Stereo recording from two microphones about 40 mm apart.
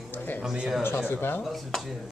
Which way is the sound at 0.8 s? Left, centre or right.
Left.